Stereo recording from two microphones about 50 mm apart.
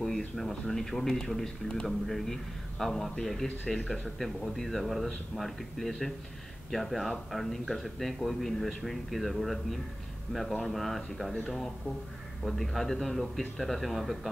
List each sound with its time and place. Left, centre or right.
0.4 s speech: centre